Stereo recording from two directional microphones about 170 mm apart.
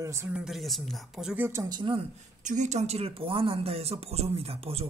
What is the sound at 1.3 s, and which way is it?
Speech, 15° right (ahead or behind).